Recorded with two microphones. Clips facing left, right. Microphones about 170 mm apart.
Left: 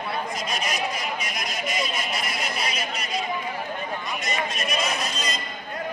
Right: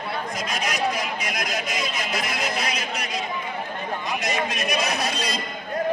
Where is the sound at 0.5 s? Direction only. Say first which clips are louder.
Right 3 dB; 90° right.